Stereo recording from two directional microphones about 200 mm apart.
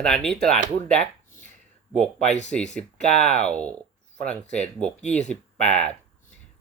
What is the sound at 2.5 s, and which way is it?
Speech, 45° right (ahead or behind).